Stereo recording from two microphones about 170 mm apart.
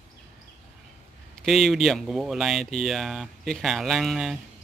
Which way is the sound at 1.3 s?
Centre (ahead or behind).